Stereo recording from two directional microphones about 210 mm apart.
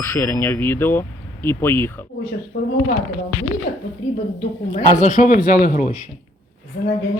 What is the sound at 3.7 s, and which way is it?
Speech, 40° left (ahead or behind).